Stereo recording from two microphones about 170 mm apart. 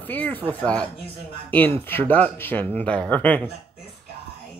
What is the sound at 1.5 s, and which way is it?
Speech, 10° left (ahead or behind).